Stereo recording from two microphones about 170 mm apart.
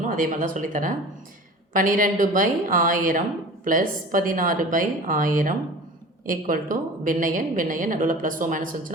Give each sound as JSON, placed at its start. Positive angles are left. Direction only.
{"t": 0.0, "sound": "a woman's voice", "side_deg": -50}